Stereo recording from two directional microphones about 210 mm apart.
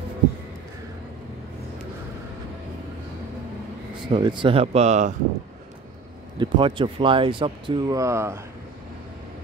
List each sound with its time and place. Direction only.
4.1 s speech: 20° right (ahead or behind)
6.3 s speech: 20° right (ahead or behind)